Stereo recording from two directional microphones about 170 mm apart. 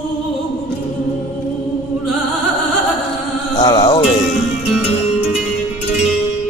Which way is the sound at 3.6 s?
20° left (ahead or behind).